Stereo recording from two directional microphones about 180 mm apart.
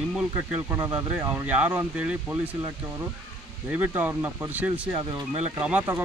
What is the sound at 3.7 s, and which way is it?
Speech, 10° right (ahead or behind).